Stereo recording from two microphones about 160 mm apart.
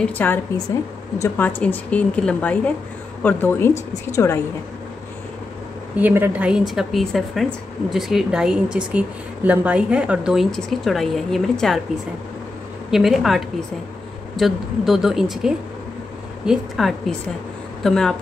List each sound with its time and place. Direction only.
0.0 s a woman's voice: 10° left (ahead or behind)
1.6 s a woman's voice: 10° left (ahead or behind)
5.9 s speech: 15° right (ahead or behind)
12.9 s speech: centre (ahead or behind)